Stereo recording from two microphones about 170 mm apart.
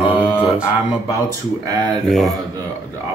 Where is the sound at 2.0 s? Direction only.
Centre (ahead or behind).